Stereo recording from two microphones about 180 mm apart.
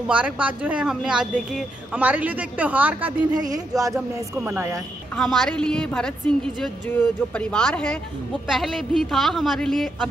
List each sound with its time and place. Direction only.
0.1 s a woman's voice: 5° right (ahead or behind)
3.4 s speech: 20° right (ahead or behind)
3.9 s a woman's voice: 5° right (ahead or behind)